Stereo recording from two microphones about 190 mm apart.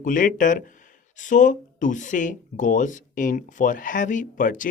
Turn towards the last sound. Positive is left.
turn(degrees=45)  # may be behind; listen again after turning